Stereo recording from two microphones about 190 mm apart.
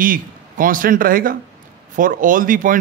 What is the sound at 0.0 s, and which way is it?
Speech, 45° right (ahead or behind).